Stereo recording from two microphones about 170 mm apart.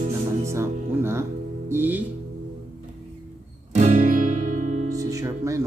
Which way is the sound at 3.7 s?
45° right (ahead or behind).